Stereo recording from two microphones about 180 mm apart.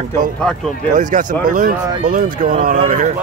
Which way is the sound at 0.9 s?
45° right (ahead or behind).